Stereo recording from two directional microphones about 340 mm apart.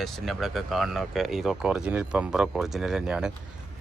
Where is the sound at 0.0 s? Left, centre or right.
Centre.